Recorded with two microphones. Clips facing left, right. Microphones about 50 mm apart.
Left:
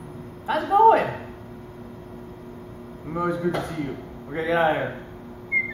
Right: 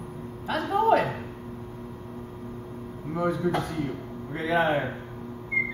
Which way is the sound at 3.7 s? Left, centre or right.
Centre.